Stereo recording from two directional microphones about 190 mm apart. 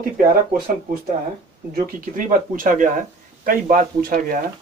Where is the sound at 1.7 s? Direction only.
45° right (ahead or behind).